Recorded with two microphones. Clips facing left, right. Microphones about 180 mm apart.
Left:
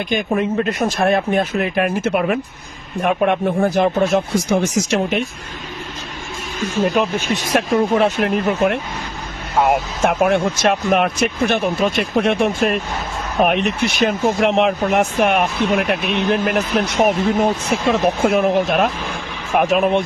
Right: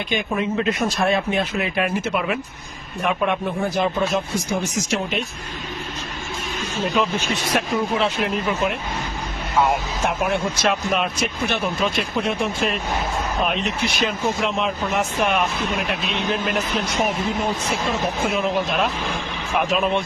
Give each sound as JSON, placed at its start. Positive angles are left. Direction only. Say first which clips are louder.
{"t": 0.1, "sound": "speech", "louder": "left 4 dB", "side_deg": 50}
{"t": 4.1, "sound": "speech", "louder": "left 6 dB", "side_deg": 65}
{"t": 7.7, "sound": "speech", "louder": "left 9 dB", "side_deg": 50}